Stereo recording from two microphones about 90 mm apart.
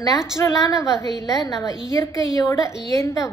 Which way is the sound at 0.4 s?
40° left (ahead or behind).